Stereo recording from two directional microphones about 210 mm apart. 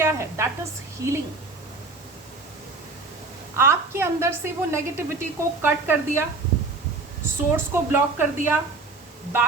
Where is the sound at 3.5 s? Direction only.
10° right (ahead or behind).